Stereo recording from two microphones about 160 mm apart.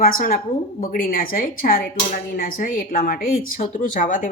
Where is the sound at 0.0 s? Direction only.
60° left (ahead or behind).